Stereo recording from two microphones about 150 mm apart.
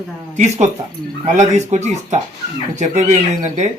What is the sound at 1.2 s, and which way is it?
Speech, 50° right (ahead or behind).